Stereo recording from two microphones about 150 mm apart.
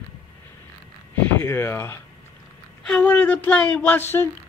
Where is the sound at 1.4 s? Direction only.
15° left (ahead or behind).